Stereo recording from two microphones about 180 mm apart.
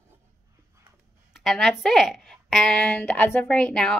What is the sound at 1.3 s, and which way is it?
Speech, centre (ahead or behind).